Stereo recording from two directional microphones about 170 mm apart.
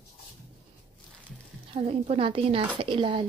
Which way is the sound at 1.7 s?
35° right (ahead or behind).